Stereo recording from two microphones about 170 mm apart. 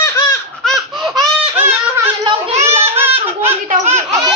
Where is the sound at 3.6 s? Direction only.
40° right (ahead or behind).